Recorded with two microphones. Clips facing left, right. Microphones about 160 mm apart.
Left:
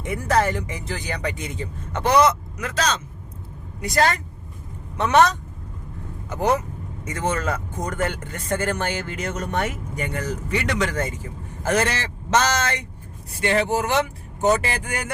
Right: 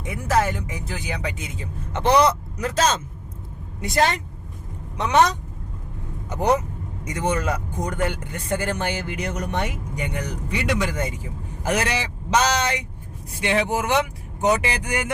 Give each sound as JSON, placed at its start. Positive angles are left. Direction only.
{"t": 0.0, "sound": "speech", "side_deg": 0}
{"t": 2.2, "sound": "speech", "side_deg": -35}
{"t": 3.8, "sound": "speech", "side_deg": -20}